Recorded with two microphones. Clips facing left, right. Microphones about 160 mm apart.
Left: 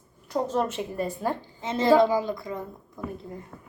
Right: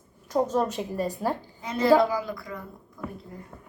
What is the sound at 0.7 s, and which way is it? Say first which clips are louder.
Speech: right 1 dB; 40° right (ahead or behind).